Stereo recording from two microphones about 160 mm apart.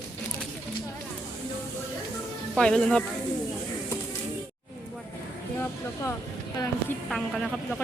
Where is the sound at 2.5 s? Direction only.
5° left (ahead or behind).